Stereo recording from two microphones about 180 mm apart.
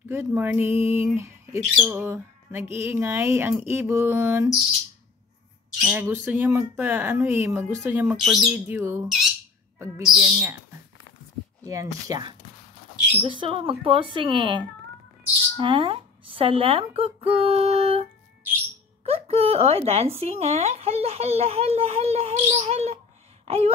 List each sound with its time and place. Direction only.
0.1 s speech: 15° right (ahead or behind)
1.9 s squawk: 10° right (ahead or behind)
2.8 s speech: 15° right (ahead or behind)
5.8 s speech: 10° right (ahead or behind)
8.6 s speech: 15° right (ahead or behind)
10.0 s speech: centre (ahead or behind)
11.6 s speech: 20° right (ahead or behind); by 18.0 s 35° right (ahead or behind)
19.0 s speech: 35° right (ahead or behind)
23.4 s a sound: 35° right (ahead or behind)